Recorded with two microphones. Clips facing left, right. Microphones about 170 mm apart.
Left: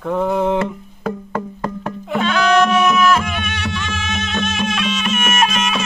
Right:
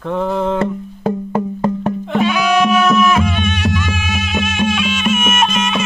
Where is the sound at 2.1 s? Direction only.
10° right (ahead or behind).